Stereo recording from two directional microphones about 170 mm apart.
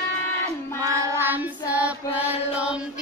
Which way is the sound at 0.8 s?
20° right (ahead or behind).